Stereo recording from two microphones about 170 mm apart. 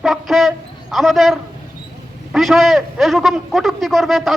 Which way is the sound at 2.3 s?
Centre (ahead or behind).